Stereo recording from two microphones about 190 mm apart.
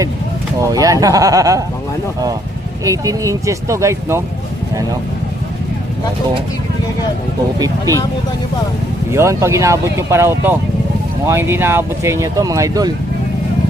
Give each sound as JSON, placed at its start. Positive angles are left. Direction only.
{"t": 0.7, "sound": "speech", "side_deg": -20}
{"t": 2.8, "sound": "speech", "side_deg": -15}
{"t": 9.1, "sound": "speech", "side_deg": -15}